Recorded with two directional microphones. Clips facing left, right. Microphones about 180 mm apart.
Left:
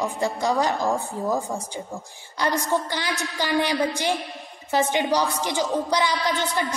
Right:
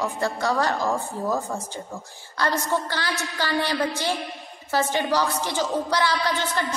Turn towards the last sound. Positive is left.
turn(degrees=15)  # may be behind; listen again after turning